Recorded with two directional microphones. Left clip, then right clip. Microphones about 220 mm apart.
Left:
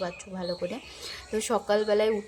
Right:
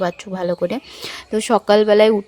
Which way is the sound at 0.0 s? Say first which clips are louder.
Right 12 dB; 45° right (ahead or behind).